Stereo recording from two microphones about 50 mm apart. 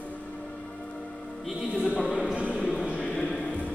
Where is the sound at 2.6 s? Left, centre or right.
Left.